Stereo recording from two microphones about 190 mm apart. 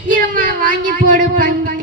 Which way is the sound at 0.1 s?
45° right (ahead or behind).